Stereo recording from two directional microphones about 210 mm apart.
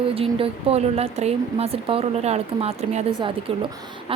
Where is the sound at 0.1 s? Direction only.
25° right (ahead or behind).